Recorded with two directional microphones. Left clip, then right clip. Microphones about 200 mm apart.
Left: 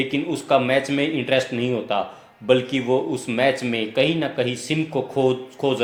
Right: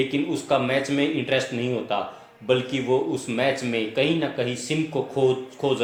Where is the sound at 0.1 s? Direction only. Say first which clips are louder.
Left 3 dB; 35° left (ahead or behind).